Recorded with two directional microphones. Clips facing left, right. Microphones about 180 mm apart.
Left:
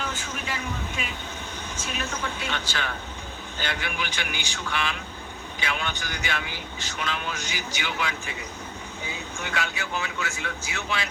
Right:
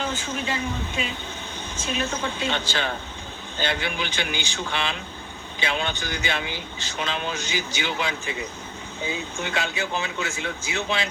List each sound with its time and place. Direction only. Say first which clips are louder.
0.0 s speech: right 5 dB; 25° right (ahead or behind)